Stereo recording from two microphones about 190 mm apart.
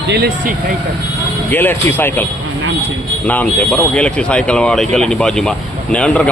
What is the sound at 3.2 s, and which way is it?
Speech, 10° left (ahead or behind).